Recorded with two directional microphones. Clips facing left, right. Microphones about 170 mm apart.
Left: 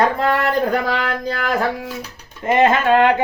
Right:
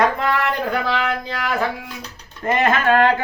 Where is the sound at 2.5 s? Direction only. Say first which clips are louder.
Left 3 dB; 20° left (ahead or behind).